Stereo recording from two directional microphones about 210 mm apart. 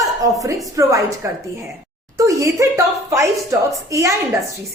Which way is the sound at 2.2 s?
15° right (ahead or behind).